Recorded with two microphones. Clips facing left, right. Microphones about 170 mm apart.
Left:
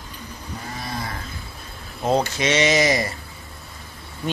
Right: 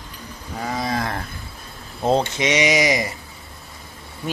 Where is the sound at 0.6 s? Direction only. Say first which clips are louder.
Right 8 dB; 90° right.